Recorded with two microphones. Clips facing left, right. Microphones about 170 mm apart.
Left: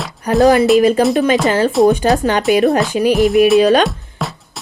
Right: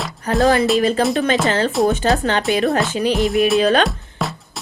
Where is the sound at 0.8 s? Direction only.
15° left (ahead or behind).